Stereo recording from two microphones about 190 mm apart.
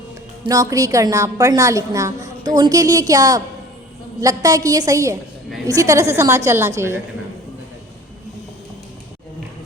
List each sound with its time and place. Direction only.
0.4 s a woman's voice: 20° right (ahead or behind)